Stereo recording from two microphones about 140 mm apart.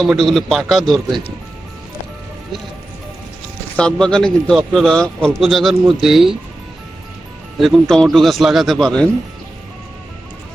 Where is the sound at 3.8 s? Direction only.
5° left (ahead or behind).